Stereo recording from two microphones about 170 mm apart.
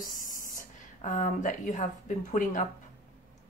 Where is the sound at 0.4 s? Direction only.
55° left (ahead or behind).